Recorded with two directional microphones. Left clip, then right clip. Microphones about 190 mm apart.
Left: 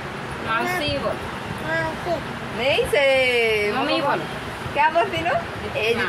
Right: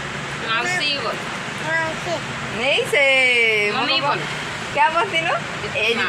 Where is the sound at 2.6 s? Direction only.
25° right (ahead or behind).